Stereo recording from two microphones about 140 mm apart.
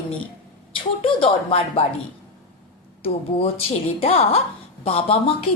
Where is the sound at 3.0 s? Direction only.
45° left (ahead or behind).